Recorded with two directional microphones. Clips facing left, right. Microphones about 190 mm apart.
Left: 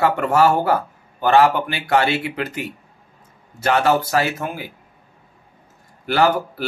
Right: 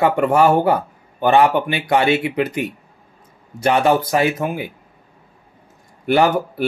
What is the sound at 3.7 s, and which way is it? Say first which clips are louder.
Speech: right 2 dB; 20° right (ahead or behind).